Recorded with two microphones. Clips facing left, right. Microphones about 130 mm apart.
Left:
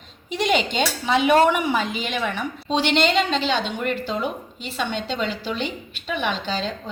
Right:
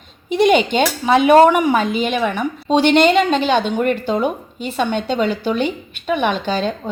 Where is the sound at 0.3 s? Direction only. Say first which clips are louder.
Right 8 dB; 55° right (ahead or behind).